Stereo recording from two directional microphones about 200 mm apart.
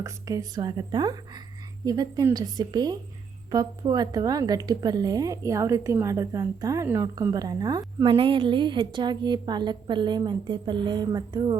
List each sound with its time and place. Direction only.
0.0 s a woman's voice: 15° right (ahead or behind)